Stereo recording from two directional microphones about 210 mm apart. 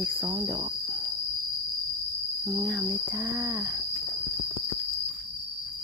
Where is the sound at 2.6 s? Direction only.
5° right (ahead or behind).